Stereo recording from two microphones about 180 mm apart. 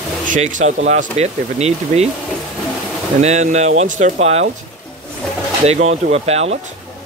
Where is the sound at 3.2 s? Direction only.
40° right (ahead or behind).